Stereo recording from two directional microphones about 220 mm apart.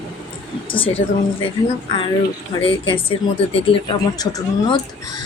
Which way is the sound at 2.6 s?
25° left (ahead or behind).